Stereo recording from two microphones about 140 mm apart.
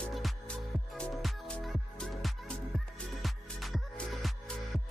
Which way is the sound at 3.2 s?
Centre (ahead or behind).